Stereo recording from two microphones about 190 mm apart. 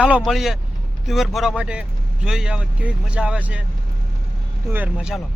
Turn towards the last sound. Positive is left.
turn(degrees=-5)  # may be behind; listen again after turning